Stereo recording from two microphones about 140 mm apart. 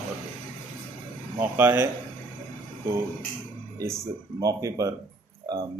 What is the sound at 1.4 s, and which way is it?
Speech, 15° right (ahead or behind).